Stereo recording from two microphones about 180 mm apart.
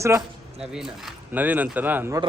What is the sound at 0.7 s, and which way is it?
Speech, 5° right (ahead or behind).